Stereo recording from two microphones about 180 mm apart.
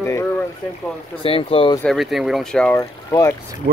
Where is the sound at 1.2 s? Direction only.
30° left (ahead or behind).